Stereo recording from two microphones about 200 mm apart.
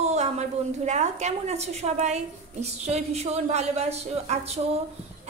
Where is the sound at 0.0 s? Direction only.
35° right (ahead or behind).